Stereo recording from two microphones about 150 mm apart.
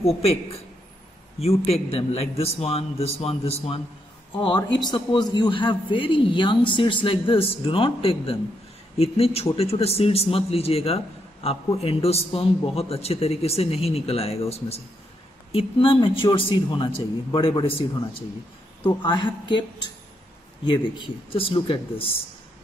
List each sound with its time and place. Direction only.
0.0 s a man's voice: 40° left (ahead or behind)
1.7 s a man's voice: 40° left (ahead or behind)
20.6 s a man's voice: 30° left (ahead or behind)